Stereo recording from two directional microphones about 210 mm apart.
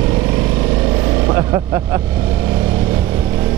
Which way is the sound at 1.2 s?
15° right (ahead or behind).